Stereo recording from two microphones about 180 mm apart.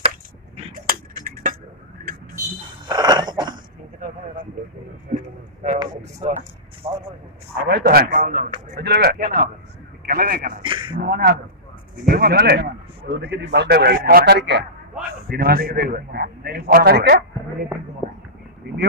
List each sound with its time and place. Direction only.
0.8 s a sound: 50° right (ahead or behind)
2.9 s a sound: 25° right (ahead or behind)
5.1 s speech: 45° right (ahead or behind)
7.6 s a man's voice: 60° right (ahead or behind)
8.7 s a man's voice: 65° right (ahead or behind)
10.6 s a man's voice: 25° right (ahead or behind)
11.0 s a man's voice: 55° right (ahead or behind)
18.6 s a man's voice: 60° right (ahead or behind)